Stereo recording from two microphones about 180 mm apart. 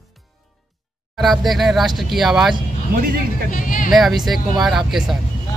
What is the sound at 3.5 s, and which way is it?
Speech, 50° left (ahead or behind).